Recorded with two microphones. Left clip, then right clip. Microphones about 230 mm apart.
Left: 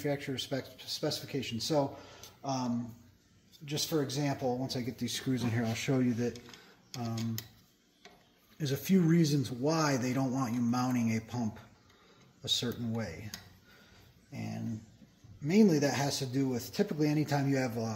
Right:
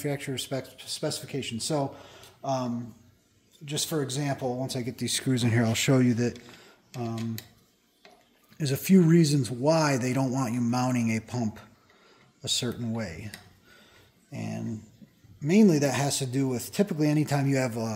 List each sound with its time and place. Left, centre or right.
0.0 s a man's voice: right
8.5 s a man's voice: right
14.3 s a man's voice: right